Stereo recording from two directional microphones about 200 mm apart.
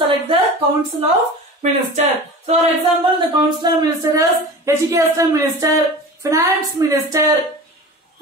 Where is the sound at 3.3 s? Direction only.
20° right (ahead or behind).